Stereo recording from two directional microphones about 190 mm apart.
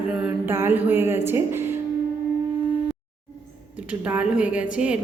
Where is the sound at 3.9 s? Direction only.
5° right (ahead or behind).